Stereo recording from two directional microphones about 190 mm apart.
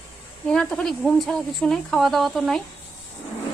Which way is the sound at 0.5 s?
5° left (ahead or behind).